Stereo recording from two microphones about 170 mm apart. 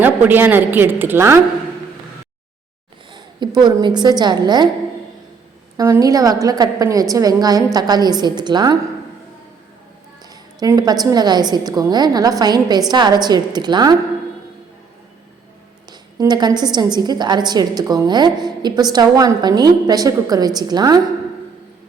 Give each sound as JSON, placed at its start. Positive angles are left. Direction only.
{"t": 0.0, "sound": "a woman's voice", "side_deg": -10}
{"t": 3.1, "sound": "a woman's voice", "side_deg": -25}
{"t": 5.7, "sound": "a woman's voice", "side_deg": -20}
{"t": 10.6, "sound": "a woman's voice", "side_deg": -25}
{"t": 15.9, "sound": "a woman's voice", "side_deg": -25}